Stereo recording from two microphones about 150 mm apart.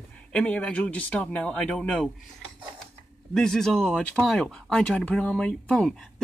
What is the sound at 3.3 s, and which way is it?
Speech, 5° left (ahead or behind).